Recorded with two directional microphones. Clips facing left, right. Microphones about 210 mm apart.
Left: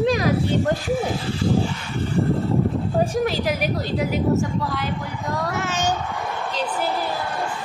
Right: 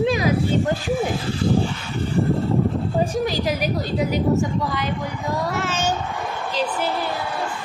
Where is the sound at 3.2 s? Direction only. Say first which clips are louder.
Even; centre (ahead or behind).